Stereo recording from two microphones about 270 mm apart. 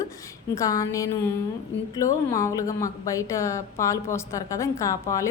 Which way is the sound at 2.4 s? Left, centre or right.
Centre.